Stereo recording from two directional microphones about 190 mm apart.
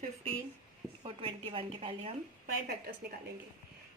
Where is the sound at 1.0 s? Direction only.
30° right (ahead or behind).